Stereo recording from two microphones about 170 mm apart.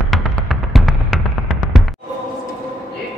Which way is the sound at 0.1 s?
Centre (ahead or behind).